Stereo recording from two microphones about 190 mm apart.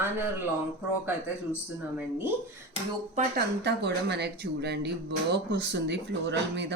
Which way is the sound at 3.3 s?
60° right (ahead or behind).